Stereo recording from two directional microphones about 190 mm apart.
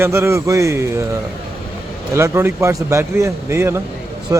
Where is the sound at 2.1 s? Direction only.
15° right (ahead or behind).